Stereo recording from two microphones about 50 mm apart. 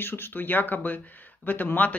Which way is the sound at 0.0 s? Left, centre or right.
Left.